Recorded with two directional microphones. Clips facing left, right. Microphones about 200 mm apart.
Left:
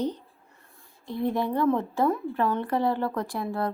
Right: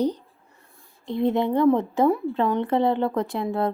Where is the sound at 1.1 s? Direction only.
20° right (ahead or behind).